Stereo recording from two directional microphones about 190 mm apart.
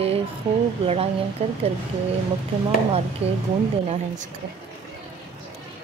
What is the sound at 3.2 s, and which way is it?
Speech, 35° right (ahead or behind).